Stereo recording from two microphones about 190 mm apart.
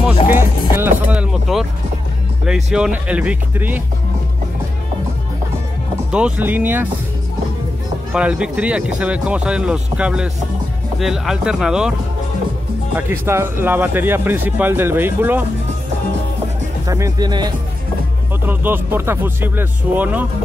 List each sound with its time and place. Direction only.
0.0 s music: 10° right (ahead or behind)
2.4 s speech: 5° right (ahead or behind)
6.1 s speech: 5° right (ahead or behind)
8.1 s speech: 5° right (ahead or behind)
12.9 s speech: 10° right (ahead or behind)
16.8 s speech: 15° right (ahead or behind)
18.5 s speech: 10° right (ahead or behind)